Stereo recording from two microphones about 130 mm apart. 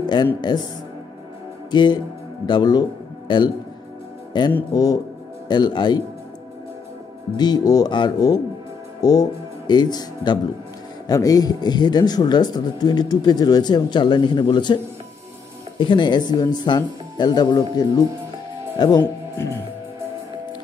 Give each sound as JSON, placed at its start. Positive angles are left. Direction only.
{"t": 0.0, "sound": "speech", "side_deg": 35}
{"t": 1.7, "sound": "speech", "side_deg": 35}
{"t": 7.3, "sound": "speech", "side_deg": 30}
{"t": 15.8, "sound": "speech", "side_deg": 40}